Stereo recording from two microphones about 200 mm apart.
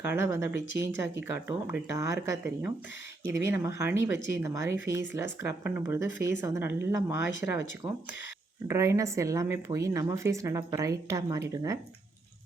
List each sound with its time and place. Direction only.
0.0 s speech: 10° right (ahead or behind)